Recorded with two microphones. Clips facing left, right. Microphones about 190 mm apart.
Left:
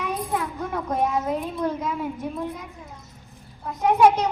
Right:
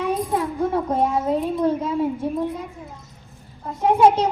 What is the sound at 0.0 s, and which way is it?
A child's voice, 30° right (ahead or behind).